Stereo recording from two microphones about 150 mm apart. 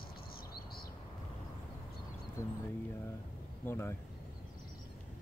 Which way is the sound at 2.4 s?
20° left (ahead or behind).